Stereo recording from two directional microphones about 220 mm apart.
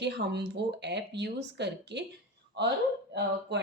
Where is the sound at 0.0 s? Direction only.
50° right (ahead or behind).